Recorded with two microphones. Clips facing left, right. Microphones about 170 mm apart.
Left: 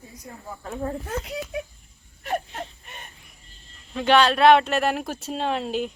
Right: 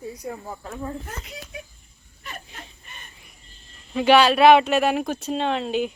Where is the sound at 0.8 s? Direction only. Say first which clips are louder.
Left 6 dB; 65° left (ahead or behind).